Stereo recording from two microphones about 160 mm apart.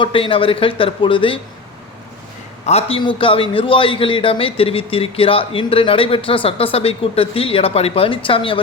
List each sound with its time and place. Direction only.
0.0 s speech: 35° left (ahead or behind)
2.6 s speech: 40° left (ahead or behind)